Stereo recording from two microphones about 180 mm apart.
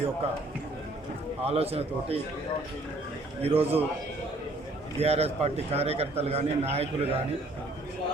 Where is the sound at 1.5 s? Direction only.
35° right (ahead or behind).